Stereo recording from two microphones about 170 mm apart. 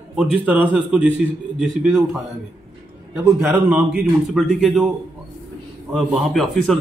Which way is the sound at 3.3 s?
10° right (ahead or behind).